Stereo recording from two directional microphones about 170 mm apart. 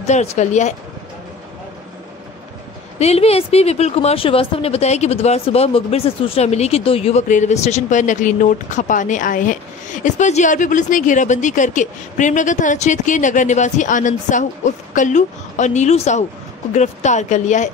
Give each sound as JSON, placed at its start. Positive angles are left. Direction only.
{"t": 0.0, "sound": "a woman's voice", "side_deg": 40}
{"t": 3.0, "sound": "a woman's voice", "side_deg": 35}